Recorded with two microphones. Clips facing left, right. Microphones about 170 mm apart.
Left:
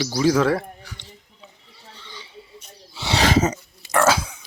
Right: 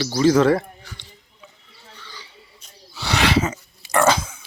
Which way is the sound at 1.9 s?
25° left (ahead or behind).